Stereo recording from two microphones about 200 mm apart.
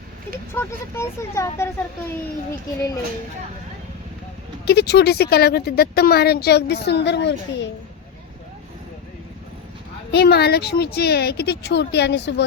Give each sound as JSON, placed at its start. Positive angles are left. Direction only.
{"t": 0.5, "sound": "speech", "side_deg": 10}
{"t": 4.6, "sound": "speech", "side_deg": 55}
{"t": 10.1, "sound": "speech", "side_deg": 55}